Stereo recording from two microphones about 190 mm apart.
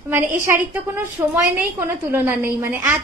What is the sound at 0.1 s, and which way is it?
A woman's voice, 10° right (ahead or behind).